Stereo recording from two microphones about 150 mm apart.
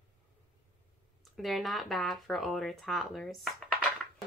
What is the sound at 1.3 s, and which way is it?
Speech, centre (ahead or behind).